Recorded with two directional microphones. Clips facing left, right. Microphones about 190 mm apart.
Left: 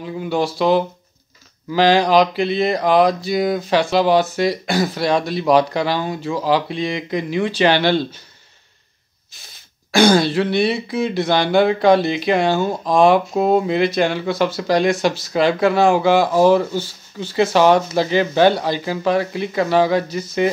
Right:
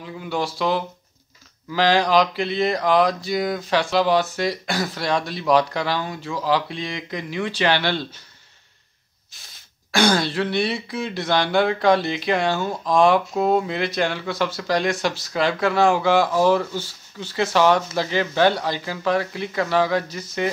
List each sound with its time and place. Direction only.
0.0 s speech: 20° left (ahead or behind)
9.8 s speech: 15° left (ahead or behind)